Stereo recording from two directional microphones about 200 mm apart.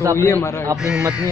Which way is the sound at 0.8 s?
5° right (ahead or behind).